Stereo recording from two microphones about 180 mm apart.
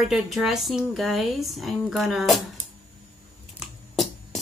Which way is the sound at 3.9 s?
Centre (ahead or behind).